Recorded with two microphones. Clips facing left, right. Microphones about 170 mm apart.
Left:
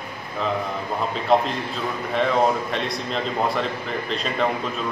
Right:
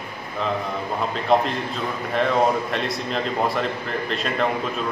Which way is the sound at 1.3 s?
Centre (ahead or behind).